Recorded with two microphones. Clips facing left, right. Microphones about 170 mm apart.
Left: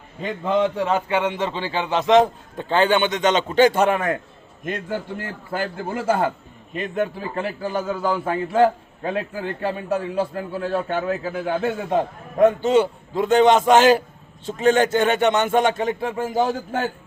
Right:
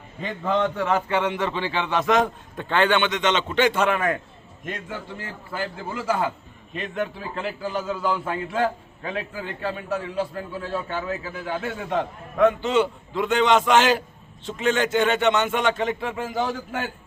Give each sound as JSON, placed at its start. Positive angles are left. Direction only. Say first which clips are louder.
{"t": 0.4, "sound": "a man's voice", "louder": "left 2 dB", "side_deg": 20}
{"t": 5.1, "sound": "a man's voice", "louder": "left 5 dB", "side_deg": 60}
{"t": 6.7, "sound": "a man's voice", "louder": "left 4 dB", "side_deg": 40}
{"t": 9.3, "sound": "a man's voice", "louder": "left 4 dB", "side_deg": 45}
{"t": 11.9, "sound": "a man's voice", "louder": "left 4 dB", "side_deg": 40}